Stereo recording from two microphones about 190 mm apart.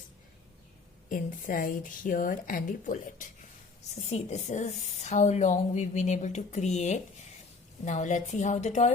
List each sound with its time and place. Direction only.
1.1 s a woman's voice: 45° left (ahead or behind)